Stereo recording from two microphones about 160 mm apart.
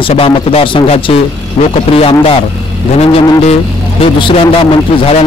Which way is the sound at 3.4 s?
40° left (ahead or behind).